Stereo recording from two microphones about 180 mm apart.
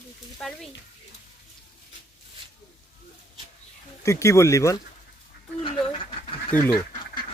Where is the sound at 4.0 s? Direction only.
15° left (ahead or behind).